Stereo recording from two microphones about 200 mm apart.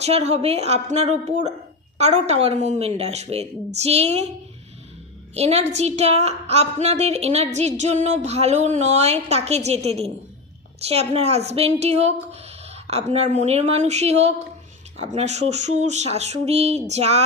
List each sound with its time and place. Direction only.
0.0 s a woman's voice: 35° right (ahead or behind)
5.3 s a woman's voice: 30° right (ahead or behind)